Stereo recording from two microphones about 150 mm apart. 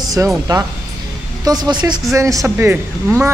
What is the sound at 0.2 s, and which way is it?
Speech, 20° right (ahead or behind).